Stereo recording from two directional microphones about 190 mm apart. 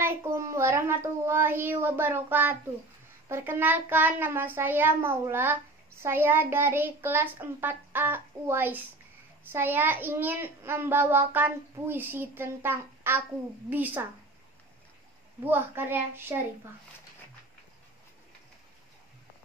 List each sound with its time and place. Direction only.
0.0 s a child's voice: 10° right (ahead or behind)
15.4 s a child's voice: 10° right (ahead or behind)